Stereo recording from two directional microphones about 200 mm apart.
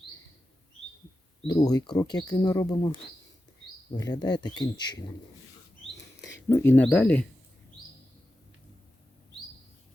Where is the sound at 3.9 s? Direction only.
20° left (ahead or behind).